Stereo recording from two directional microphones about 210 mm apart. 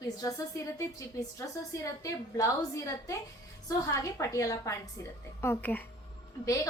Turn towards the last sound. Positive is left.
turn(degrees=15)  # may be behind; listen again after turning